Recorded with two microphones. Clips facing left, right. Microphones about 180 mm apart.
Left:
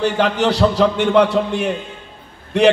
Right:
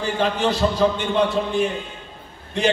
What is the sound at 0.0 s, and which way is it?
A man's voice, 75° left (ahead or behind).